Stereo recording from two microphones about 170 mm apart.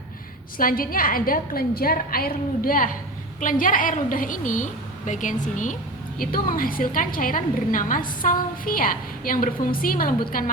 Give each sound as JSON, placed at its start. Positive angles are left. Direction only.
{"t": 0.6, "sound": "a woman's voice", "side_deg": 55}